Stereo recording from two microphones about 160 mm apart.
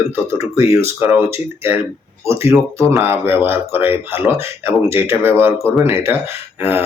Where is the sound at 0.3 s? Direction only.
15° right (ahead or behind).